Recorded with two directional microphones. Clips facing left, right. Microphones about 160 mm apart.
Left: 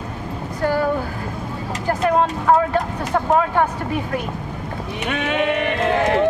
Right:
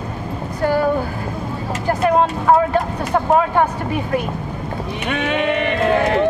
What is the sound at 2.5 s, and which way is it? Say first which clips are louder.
Speech: right 2 dB; 20° right (ahead or behind).